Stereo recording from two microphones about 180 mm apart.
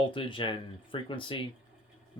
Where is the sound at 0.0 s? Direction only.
30° left (ahead or behind).